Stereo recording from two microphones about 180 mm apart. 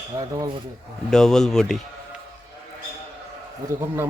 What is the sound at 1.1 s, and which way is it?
Speech, 5° left (ahead or behind).